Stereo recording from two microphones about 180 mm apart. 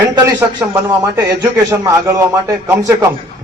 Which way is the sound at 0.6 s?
15° right (ahead or behind).